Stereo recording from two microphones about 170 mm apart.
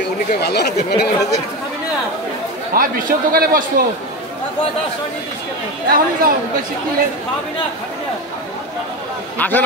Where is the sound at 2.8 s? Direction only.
55° right (ahead or behind).